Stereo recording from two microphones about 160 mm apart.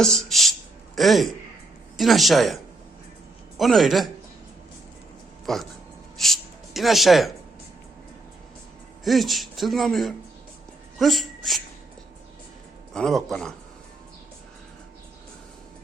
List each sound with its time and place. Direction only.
0.0 s speech: 5° left (ahead or behind)
3.6 s speech: centre (ahead or behind)
5.5 s speech: centre (ahead or behind)
9.0 s speech: centre (ahead or behind)
12.9 s speech: centre (ahead or behind)